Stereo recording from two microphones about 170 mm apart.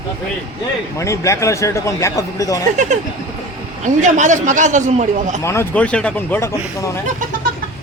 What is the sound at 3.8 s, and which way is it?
A man's voice, 45° right (ahead or behind).